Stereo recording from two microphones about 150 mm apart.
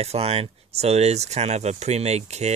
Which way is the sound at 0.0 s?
45° right (ahead or behind).